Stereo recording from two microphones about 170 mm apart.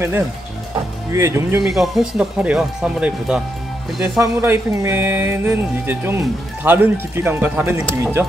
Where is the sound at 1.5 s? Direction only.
Centre (ahead or behind).